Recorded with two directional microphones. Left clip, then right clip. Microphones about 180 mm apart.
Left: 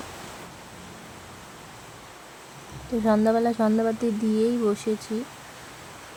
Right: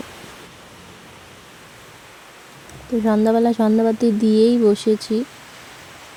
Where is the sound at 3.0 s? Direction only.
25° right (ahead or behind).